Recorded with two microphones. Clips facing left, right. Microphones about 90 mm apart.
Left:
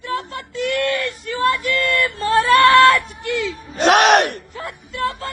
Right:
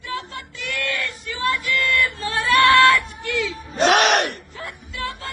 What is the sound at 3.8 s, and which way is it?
Speech, 55° left (ahead or behind).